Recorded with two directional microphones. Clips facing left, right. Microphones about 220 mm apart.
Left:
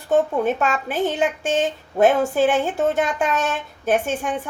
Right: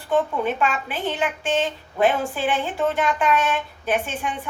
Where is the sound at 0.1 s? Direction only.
45° left (ahead or behind).